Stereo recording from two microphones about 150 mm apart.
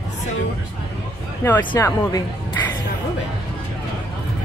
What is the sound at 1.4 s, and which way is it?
Speech, 15° left (ahead or behind).